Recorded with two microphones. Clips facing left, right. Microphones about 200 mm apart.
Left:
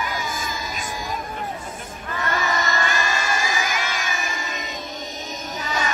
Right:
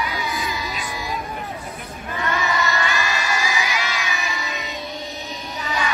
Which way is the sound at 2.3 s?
45° left (ahead or behind).